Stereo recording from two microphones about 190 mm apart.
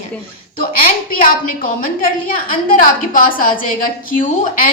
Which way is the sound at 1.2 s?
45° left (ahead or behind).